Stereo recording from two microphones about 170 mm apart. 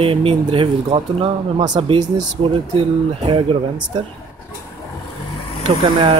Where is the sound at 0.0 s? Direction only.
35° right (ahead or behind).